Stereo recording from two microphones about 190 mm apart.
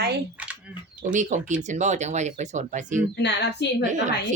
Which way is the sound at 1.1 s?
40° right (ahead or behind).